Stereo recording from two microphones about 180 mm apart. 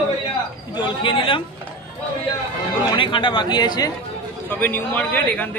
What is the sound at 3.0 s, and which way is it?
Speech, 25° left (ahead or behind).